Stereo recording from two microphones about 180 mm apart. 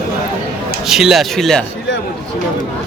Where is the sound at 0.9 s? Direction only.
Centre (ahead or behind).